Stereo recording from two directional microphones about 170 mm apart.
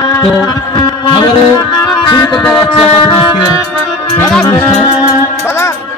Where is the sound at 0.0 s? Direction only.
20° left (ahead or behind).